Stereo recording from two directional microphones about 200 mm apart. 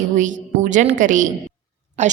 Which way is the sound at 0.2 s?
40° right (ahead or behind).